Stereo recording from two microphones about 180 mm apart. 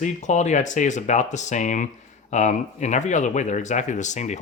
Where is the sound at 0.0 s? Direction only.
40° left (ahead or behind).